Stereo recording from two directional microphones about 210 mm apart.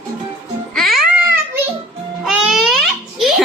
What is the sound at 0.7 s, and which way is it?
Babbling, centre (ahead or behind).